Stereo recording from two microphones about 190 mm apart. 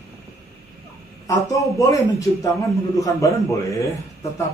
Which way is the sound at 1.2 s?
15° left (ahead or behind).